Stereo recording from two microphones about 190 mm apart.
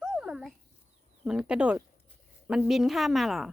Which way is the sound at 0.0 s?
5° right (ahead or behind).